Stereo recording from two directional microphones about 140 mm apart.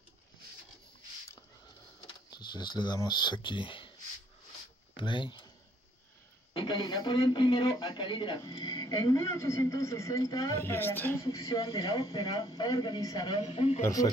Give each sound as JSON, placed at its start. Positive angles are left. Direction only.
{"t": 2.0, "sound": "speech", "side_deg": 30}
{"t": 4.9, "sound": "speech", "side_deg": 35}
{"t": 6.5, "sound": "a man's voice", "side_deg": 35}
{"t": 11.2, "sound": "a man's voice", "side_deg": 25}
{"t": 13.4, "sound": "speech", "side_deg": 50}
{"t": 13.8, "sound": "a man's voice", "side_deg": 25}